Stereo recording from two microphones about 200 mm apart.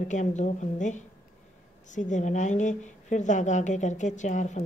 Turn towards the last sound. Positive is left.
turn(degrees=35)  # may be behind; listen again after turning